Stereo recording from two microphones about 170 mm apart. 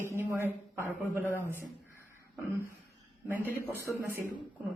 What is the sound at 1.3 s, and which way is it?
Speech, 10° left (ahead or behind).